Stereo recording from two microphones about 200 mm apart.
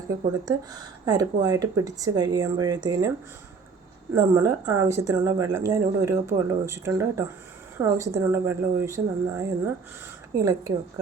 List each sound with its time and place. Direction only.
0.4 s speech: 20° right (ahead or behind)
4.1 s speech: 15° right (ahead or behind)